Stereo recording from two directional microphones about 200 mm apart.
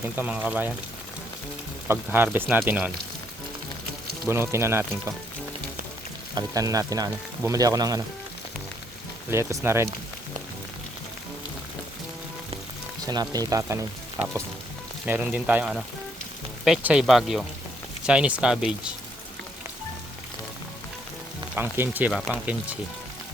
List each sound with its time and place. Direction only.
0.0 s speech: 10° right (ahead or behind)
1.9 s speech: 10° right (ahead or behind)
4.3 s speech: 15° right (ahead or behind)
6.3 s speech: 15° right (ahead or behind)
9.3 s speech: 15° right (ahead or behind)
13.1 s speech: 20° right (ahead or behind)
15.0 s speech: 10° right (ahead or behind)
21.5 s speech: 10° right (ahead or behind)